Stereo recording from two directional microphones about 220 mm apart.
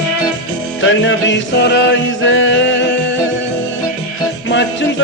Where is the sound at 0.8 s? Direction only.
55° left (ahead or behind).